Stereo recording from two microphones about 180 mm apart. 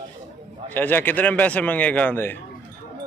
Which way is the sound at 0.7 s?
10° left (ahead or behind).